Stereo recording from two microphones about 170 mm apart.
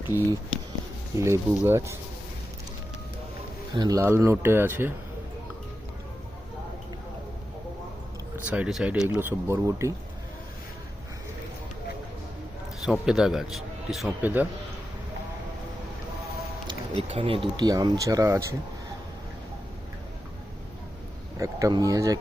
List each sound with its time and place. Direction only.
0.1 s a man's voice: 15° right (ahead or behind)
3.8 s a man's voice: 20° right (ahead or behind)
8.4 s a man's voice: 5° right (ahead or behind)
12.8 s a man's voice: 5° right (ahead or behind)
16.6 s speech: 35° right (ahead or behind); by 18.4 s 20° right (ahead or behind)
21.3 s speech: 20° right (ahead or behind)